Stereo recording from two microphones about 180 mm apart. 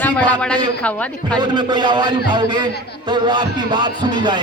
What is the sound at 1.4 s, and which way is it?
A man's voice, 25° right (ahead or behind).